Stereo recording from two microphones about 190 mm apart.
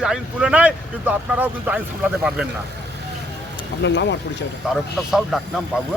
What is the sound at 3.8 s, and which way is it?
Speech, 65° left (ahead or behind).